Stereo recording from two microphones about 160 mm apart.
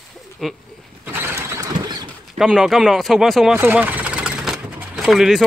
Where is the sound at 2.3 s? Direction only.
5° right (ahead or behind).